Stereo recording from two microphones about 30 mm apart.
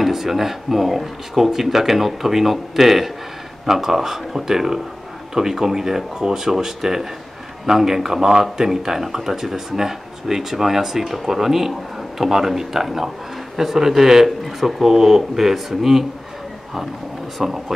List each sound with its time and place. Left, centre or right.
0.0 s speech: centre
17.4 s speech: centre